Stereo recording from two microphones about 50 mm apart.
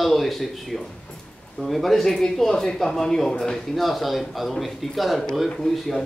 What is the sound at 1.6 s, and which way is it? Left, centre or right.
Speech, centre.